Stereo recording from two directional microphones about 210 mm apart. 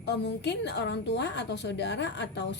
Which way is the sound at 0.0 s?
55° left (ahead or behind).